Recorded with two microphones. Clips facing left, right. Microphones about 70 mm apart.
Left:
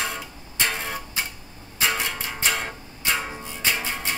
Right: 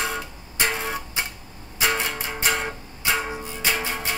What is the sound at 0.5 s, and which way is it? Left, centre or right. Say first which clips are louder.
Music: right 2 dB; centre.